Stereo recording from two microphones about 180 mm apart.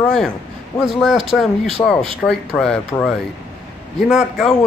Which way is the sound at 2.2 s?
Centre (ahead or behind).